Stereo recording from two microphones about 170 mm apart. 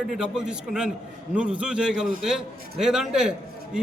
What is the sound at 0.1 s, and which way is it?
A man's voice, 5° right (ahead or behind).